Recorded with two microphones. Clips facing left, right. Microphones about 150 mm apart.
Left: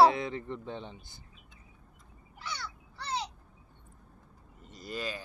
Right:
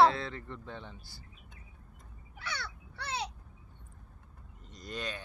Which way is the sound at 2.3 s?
65° right (ahead or behind).